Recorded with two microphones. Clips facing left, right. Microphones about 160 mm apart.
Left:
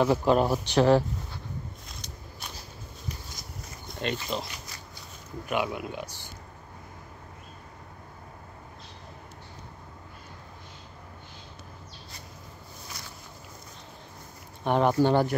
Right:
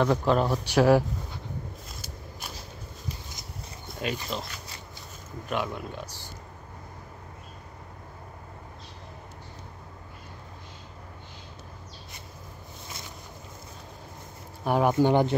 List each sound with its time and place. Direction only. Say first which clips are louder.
0.0 s speech: left 1 dB; 5° left (ahead or behind)
0.7 s speech: right 2 dB; 10° right (ahead or behind)
1.9 s walk: right 2 dB; 5° right (ahead or behind)
3.8 s speech: even; 5° right (ahead or behind)
5.5 s speech: left 2 dB; 5° left (ahead or behind)
14.6 s speech: even; 5° right (ahead or behind)
15.0 s speech: right 1 dB; 20° right (ahead or behind)